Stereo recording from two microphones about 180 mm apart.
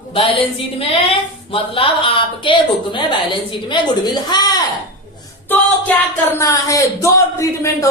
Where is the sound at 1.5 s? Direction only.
30° left (ahead or behind).